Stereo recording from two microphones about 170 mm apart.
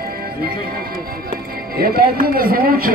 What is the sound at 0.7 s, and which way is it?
Speech, 65° right (ahead or behind).